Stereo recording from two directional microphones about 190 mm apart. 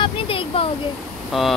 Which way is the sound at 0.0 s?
30° left (ahead or behind).